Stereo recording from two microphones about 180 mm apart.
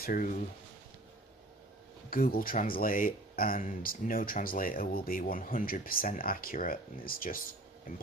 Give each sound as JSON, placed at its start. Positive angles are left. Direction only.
{"t": 0.0, "sound": "speech", "side_deg": 50}
{"t": 2.0, "sound": "speech", "side_deg": 55}